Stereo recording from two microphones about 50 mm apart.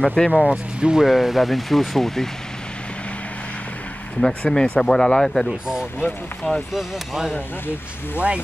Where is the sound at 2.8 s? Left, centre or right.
Left.